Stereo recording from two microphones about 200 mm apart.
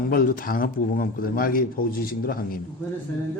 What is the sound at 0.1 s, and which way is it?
A man's voice, 45° left (ahead or behind).